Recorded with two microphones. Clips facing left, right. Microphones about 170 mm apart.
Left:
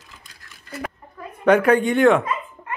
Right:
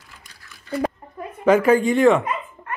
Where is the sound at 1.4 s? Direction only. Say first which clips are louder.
Even; centre (ahead or behind).